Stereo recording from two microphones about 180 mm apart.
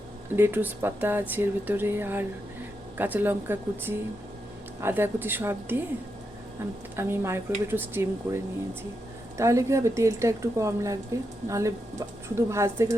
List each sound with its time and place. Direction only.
0.3 s speech: 10° right (ahead or behind)
6.9 s speech: 15° right (ahead or behind)
9.4 s speech: 15° right (ahead or behind)